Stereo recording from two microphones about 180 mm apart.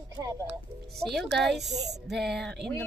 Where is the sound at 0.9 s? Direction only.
Centre (ahead or behind).